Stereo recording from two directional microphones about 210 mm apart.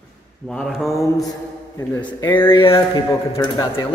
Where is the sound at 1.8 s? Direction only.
20° left (ahead or behind).